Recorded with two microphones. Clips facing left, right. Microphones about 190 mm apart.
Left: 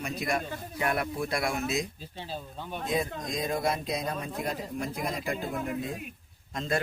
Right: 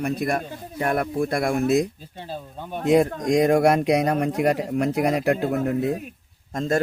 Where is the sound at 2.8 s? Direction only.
75° right (ahead or behind).